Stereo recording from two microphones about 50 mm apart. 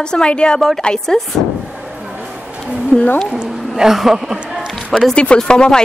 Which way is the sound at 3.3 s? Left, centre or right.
Centre.